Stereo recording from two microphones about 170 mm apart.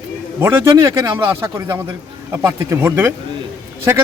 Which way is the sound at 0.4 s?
15° right (ahead or behind).